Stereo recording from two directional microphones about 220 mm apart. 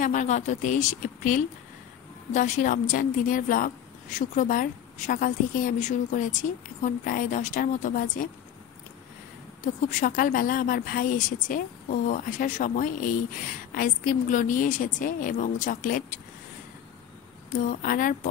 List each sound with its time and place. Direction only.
0.0 s a woman's voice: 35° left (ahead or behind)
9.6 s a woman's voice: 35° left (ahead or behind)
17.5 s a woman's voice: 40° left (ahead or behind)